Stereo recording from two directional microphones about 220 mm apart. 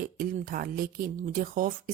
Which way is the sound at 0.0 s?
40° right (ahead or behind).